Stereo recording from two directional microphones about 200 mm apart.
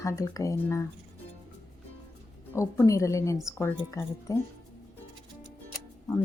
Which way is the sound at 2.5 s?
15° left (ahead or behind).